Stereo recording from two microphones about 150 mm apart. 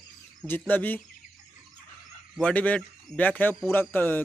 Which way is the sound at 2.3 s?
10° left (ahead or behind).